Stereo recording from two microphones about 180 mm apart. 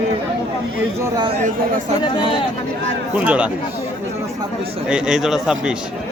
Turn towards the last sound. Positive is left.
turn(degrees=-5)  # may be behind; listen again after turning